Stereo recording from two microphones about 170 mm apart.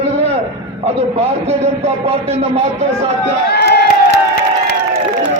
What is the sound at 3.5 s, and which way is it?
Crowd, 75° left (ahead or behind).